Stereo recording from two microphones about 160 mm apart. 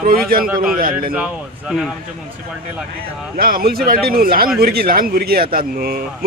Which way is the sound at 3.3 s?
65° right (ahead or behind).